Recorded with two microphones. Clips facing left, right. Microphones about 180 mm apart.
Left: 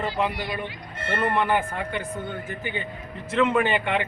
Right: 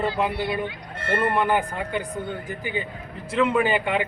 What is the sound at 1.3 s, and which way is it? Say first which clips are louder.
A man's voice: right 1 dB; 15° right (ahead or behind).